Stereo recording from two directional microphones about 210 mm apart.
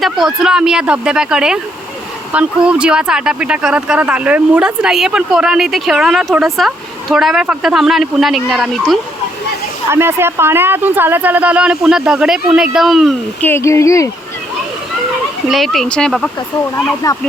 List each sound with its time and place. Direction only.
0.0 s speech: centre (ahead or behind)
9.9 s speech: 10° right (ahead or behind); by 14.1 s 15° left (ahead or behind)
15.4 s speech: centre (ahead or behind)
16.7 s speech: 15° left (ahead or behind)